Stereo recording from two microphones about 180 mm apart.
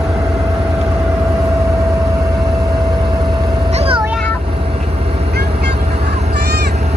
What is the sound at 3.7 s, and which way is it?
Vehicle, 35° right (ahead or behind).